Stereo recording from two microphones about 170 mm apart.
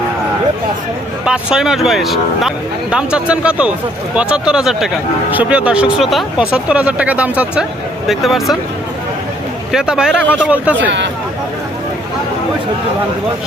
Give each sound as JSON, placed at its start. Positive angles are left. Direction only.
{"t": 1.2, "sound": "speech", "side_deg": -5}
{"t": 9.7, "sound": "speech", "side_deg": -5}
{"t": 10.8, "sound": "speech", "side_deg": -90}